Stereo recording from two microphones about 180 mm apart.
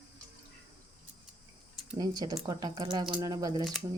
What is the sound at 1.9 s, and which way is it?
Speech, 20° right (ahead or behind).